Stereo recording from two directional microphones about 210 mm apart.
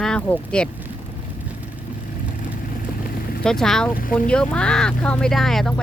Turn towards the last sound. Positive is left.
turn(degrees=0)  # may be behind; listen again after turning